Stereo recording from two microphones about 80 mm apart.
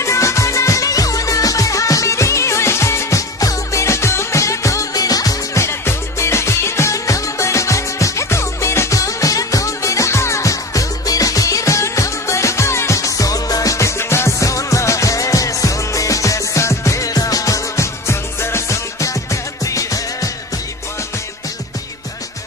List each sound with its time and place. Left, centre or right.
0.0 s music: left